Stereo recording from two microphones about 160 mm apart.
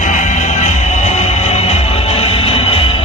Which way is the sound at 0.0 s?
50° left (ahead or behind).